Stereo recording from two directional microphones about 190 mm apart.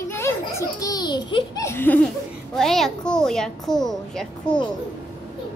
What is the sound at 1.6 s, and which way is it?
A child's voice, 10° left (ahead or behind).